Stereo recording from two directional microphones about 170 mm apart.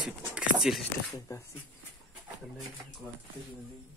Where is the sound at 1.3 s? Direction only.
20° left (ahead or behind).